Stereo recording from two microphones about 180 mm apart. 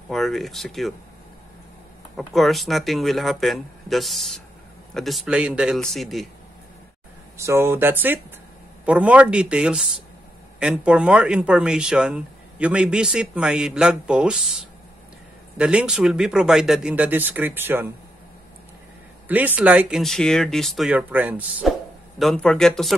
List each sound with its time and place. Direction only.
0.1 s speech: centre (ahead or behind)
2.1 s speech: centre (ahead or behind)
7.3 s a man's voice: 15° right (ahead or behind)
19.2 s speech: 10° right (ahead or behind)
22.2 s speech: 5° left (ahead or behind)